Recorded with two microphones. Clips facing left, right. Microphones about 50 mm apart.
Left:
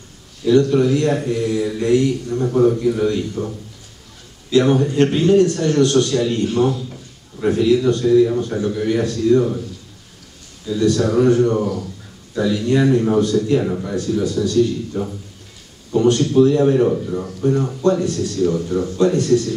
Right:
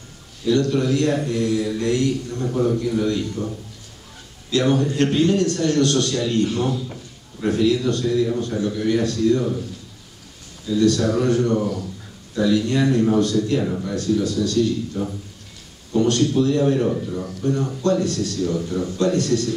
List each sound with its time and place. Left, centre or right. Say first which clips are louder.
0.7 s a man's voice: left 3 dB; centre
10.7 s a man's voice: left 1 dB; centre
16.1 s a man's voice: left 7 dB; centre